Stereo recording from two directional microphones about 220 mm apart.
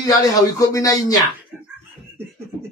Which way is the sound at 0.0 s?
15° left (ahead or behind).